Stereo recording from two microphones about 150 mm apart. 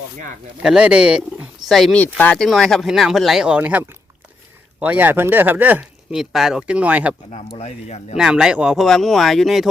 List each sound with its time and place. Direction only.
0.6 s speech: 5° right (ahead or behind)
7.3 s speech: 45° left (ahead or behind)
8.1 s speech: 5° right (ahead or behind)